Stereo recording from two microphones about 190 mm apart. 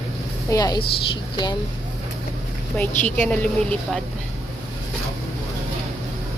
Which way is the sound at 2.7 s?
10° left (ahead or behind).